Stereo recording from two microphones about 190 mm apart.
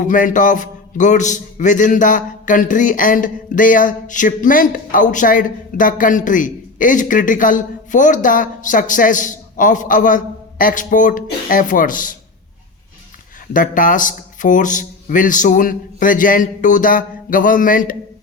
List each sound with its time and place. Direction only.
0.0 s a man's voice: 45° left (ahead or behind)
13.5 s a man's voice: 45° left (ahead or behind)